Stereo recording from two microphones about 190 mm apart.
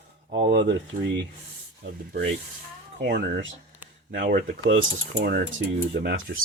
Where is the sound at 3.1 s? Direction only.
60° right (ahead or behind).